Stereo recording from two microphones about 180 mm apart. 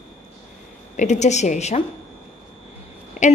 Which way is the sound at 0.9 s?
40° left (ahead or behind).